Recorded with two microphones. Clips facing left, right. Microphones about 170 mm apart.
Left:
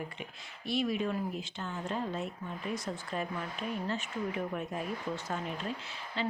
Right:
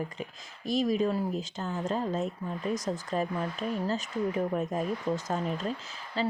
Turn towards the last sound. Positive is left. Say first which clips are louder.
# right 4 dB
turn(degrees=-40)  # may be behind; listen again after turning